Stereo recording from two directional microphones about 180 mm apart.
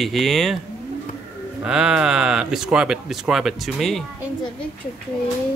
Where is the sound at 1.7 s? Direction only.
5° right (ahead or behind).